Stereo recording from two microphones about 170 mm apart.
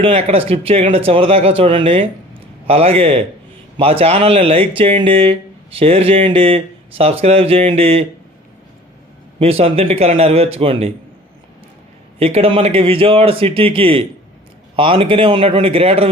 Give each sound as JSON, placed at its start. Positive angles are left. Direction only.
{"t": 0.0, "sound": "speech", "side_deg": -35}
{"t": 9.4, "sound": "speech", "side_deg": -35}
{"t": 12.2, "sound": "speech", "side_deg": -35}